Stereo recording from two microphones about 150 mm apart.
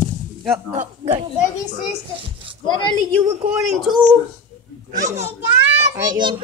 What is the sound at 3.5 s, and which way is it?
Speech, 5° right (ahead or behind).